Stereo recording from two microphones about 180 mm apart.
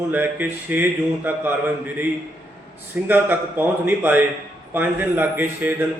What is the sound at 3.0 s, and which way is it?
A man's voice, 10° right (ahead or behind).